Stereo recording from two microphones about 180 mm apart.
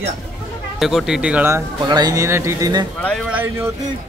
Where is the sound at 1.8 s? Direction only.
25° right (ahead or behind).